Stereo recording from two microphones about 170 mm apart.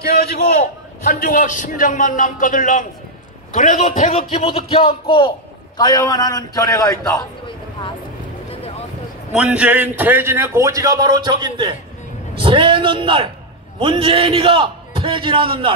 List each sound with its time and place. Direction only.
0.0 s a man's voice: 65° left (ahead or behind)
1.0 s a man's voice: 50° left (ahead or behind)
4.3 s a man's voice: 35° left (ahead or behind)
9.3 s a man's voice: 5° right (ahead or behind); by 15.7 s 30° right (ahead or behind)